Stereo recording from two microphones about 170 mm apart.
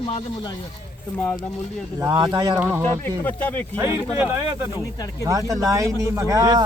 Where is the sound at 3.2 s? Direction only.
10° left (ahead or behind).